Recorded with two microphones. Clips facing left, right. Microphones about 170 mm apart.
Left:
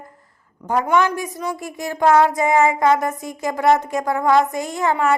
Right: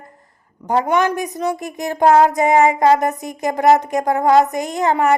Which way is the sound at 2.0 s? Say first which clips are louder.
Right 2 dB; 35° right (ahead or behind).